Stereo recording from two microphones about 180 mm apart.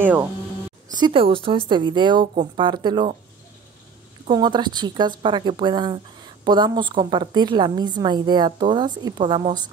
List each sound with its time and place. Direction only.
0.0 s speech: 10° right (ahead or behind)
0.9 s a woman's voice: 25° right (ahead or behind)
4.3 s a woman's voice: 25° right (ahead or behind)